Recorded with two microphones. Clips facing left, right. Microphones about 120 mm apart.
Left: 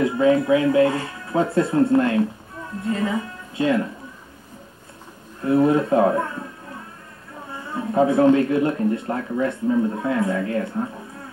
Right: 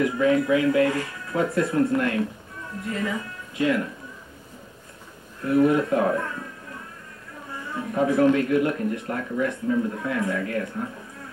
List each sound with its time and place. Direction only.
0.0 s speech: 30° left (ahead or behind)
5.4 s speech: 30° left (ahead or behind)
7.7 s speech: 30° left (ahead or behind)